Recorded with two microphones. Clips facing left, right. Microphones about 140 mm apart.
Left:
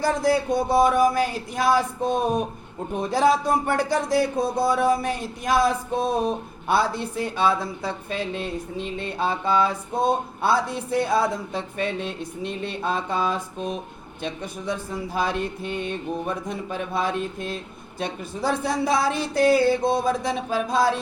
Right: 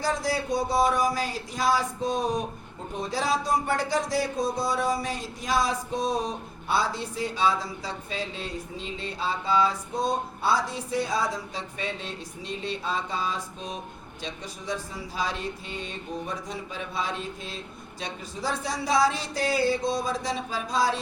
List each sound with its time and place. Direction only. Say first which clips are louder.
0.0 s speech: left 6 dB; 55° left (ahead or behind)